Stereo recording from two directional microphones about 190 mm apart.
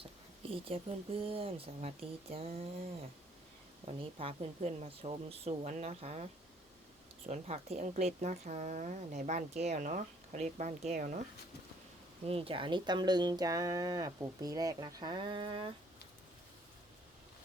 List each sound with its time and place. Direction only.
0.5 s speech: 30° right (ahead or behind)
7.3 s speech: 35° right (ahead or behind)
12.2 s speech: 30° right (ahead or behind)